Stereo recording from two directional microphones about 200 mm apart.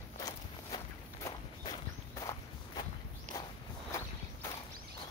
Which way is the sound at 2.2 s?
20° left (ahead or behind).